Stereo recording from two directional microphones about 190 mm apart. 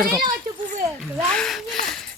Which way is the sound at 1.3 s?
Centre (ahead or behind).